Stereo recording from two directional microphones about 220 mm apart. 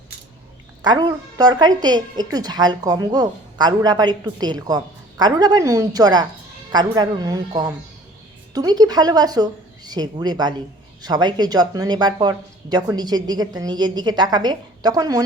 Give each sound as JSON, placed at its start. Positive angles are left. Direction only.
{"t": 0.8, "sound": "a woman's voice", "side_deg": -20}